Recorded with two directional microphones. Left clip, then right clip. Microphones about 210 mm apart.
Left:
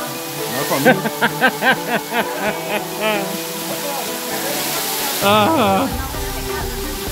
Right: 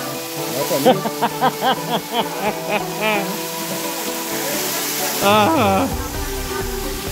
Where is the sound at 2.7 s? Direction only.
10° right (ahead or behind).